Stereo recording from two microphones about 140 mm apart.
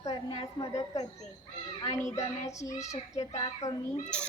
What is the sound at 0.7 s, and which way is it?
A woman's voice, 25° left (ahead or behind).